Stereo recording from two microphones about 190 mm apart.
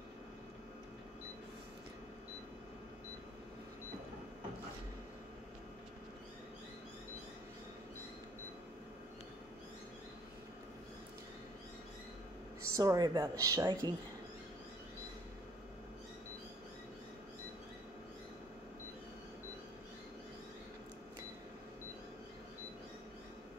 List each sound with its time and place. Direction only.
12.7 s speech: 20° right (ahead or behind)